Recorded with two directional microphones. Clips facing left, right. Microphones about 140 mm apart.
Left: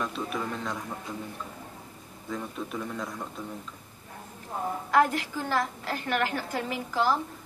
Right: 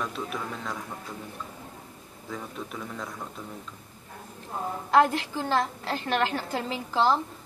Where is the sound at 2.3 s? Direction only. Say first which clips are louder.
Left 3 dB; centre (ahead or behind).